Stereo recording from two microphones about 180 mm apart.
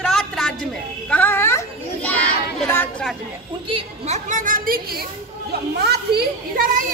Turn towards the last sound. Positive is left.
turn(degrees=-65)  # may be behind; listen again after turning